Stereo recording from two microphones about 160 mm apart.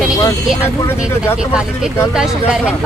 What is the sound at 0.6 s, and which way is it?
Speech, 15° left (ahead or behind).